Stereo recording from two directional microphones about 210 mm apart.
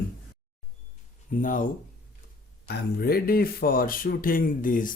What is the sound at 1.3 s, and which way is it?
Speech, 40° left (ahead or behind).